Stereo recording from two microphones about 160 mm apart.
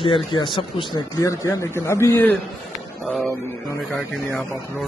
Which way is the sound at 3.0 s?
Centre (ahead or behind).